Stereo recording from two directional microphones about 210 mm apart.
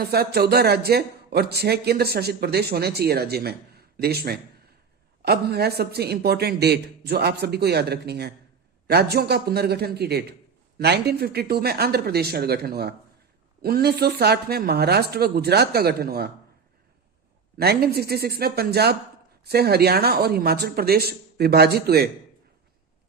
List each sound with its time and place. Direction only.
0.0 s speech: 50° right (ahead or behind)
17.6 s speech: 50° right (ahead or behind)